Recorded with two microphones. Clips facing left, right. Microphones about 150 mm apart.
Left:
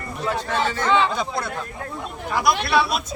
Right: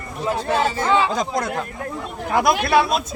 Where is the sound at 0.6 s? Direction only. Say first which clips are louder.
Right 2 dB; 35° right (ahead or behind).